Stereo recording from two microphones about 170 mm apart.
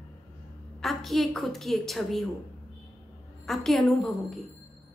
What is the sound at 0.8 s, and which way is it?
A woman's voice, centre (ahead or behind).